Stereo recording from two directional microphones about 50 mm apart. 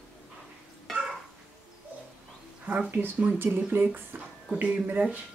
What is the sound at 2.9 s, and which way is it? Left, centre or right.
Speech, right.